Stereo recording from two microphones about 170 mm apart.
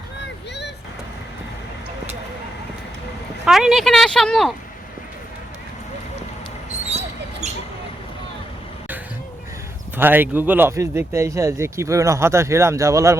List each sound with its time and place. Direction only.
3.4 s speech: 5° right (ahead or behind)
7.4 s a sound: 40° right (ahead or behind)
10.0 s speech: 10° right (ahead or behind)